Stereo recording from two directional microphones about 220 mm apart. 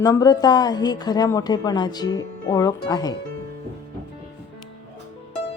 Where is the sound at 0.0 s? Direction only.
15° left (ahead or behind).